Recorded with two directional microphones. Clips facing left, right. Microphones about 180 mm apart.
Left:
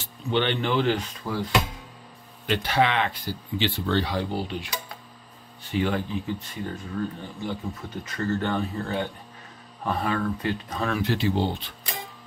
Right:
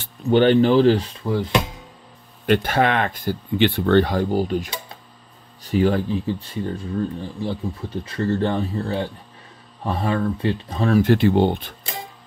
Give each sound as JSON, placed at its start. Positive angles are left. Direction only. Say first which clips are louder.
{"t": 0.0, "sound": "speech", "louder": "right 9 dB", "side_deg": -40}
{"t": 2.4, "sound": "speech", "louder": "right 5 dB", "side_deg": -50}
{"t": 11.0, "sound": "speech", "louder": "right 10 dB", "side_deg": -55}